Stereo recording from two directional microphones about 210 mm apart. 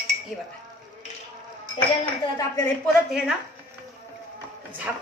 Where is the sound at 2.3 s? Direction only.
15° left (ahead or behind).